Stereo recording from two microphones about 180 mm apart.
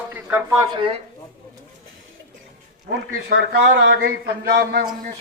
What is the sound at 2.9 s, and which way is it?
A man's voice, 70° right (ahead or behind).